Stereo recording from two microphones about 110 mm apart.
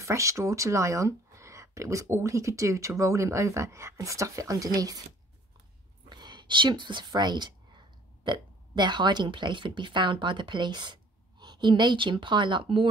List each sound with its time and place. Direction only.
0.0 s speech: 30° right (ahead or behind)
6.0 s a woman's voice: 40° right (ahead or behind)